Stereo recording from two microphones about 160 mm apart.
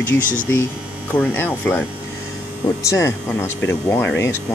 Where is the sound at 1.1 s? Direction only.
10° left (ahead or behind).